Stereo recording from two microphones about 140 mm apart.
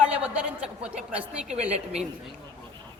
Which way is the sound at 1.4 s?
50° right (ahead or behind).